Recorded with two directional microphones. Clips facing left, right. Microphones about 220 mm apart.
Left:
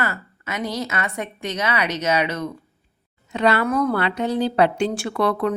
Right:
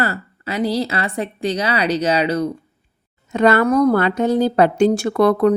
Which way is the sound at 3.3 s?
45° right (ahead or behind).